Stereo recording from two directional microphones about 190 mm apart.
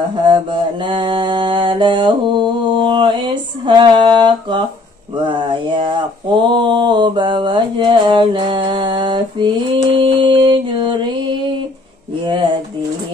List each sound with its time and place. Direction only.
0.3 s mantra: 25° right (ahead or behind)